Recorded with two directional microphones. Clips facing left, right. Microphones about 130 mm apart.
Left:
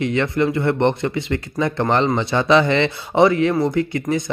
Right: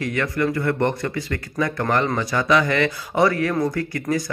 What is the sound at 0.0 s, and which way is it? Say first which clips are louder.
Speech: left 4 dB; 25° left (ahead or behind).